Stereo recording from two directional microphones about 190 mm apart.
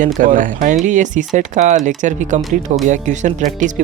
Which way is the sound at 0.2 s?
45° right (ahead or behind).